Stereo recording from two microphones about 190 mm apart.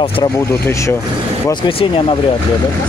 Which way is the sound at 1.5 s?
30° left (ahead or behind).